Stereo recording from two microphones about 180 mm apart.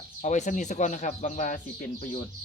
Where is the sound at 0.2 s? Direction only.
40° left (ahead or behind).